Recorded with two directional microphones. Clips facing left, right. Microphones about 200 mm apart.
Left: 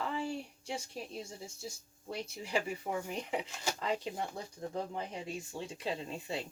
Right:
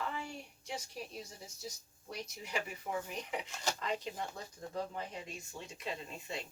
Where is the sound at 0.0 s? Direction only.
30° left (ahead or behind).